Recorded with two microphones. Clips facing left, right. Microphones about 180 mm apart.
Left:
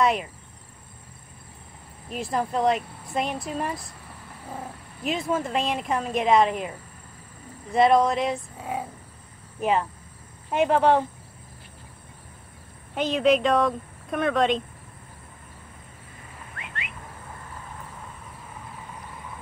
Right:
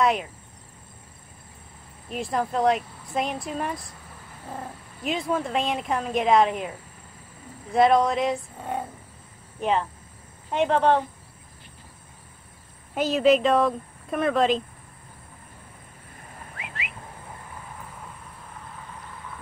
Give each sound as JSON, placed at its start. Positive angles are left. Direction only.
{"t": 0.0, "sound": "cricket", "side_deg": 0}
{"t": 2.0, "sound": "speech", "side_deg": 0}
{"t": 7.7, "sound": "speech", "side_deg": 0}
{"t": 9.6, "sound": "cricket", "side_deg": 5}
{"t": 10.5, "sound": "speech", "side_deg": 5}
{"t": 12.9, "sound": "speech", "side_deg": -5}
{"t": 16.5, "sound": "a sound", "side_deg": 0}